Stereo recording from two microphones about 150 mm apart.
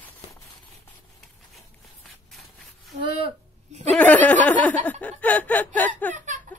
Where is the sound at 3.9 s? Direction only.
10° left (ahead or behind).